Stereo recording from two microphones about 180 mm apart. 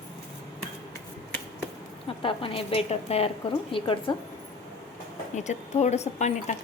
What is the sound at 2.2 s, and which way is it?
A woman's voice, 30° left (ahead or behind).